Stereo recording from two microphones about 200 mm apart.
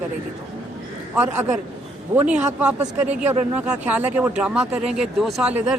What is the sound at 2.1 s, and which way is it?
Speech, 10° right (ahead or behind).